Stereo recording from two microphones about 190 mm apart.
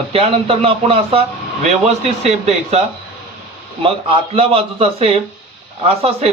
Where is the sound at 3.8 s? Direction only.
30° right (ahead or behind).